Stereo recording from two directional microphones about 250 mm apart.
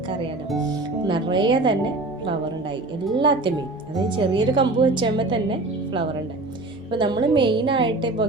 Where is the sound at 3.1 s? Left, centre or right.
Centre.